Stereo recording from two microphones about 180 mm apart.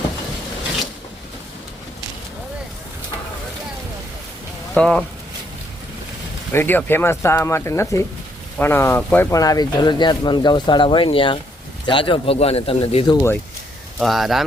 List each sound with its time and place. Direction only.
4.7 s speech: 5° left (ahead or behind)
6.5 s speech: 10° left (ahead or behind); by 13.2 s 30° left (ahead or behind)
14.0 s speech: centre (ahead or behind)